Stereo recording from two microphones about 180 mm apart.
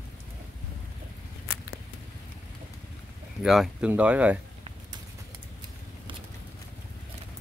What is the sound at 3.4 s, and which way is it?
Speech, 5° right (ahead or behind).